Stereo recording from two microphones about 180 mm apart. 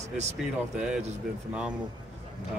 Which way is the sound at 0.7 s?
5° right (ahead or behind).